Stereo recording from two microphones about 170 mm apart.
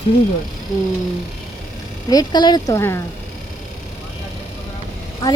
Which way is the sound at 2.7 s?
15° left (ahead or behind).